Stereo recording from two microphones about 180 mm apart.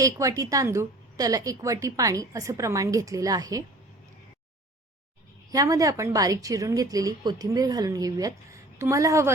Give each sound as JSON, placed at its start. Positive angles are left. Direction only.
{"t": 0.0, "sound": "a woman's voice", "side_deg": -20}
{"t": 5.5, "sound": "a woman's voice", "side_deg": -20}